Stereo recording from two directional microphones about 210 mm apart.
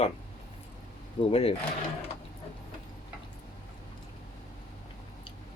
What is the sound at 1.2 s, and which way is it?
Speech, 30° left (ahead or behind).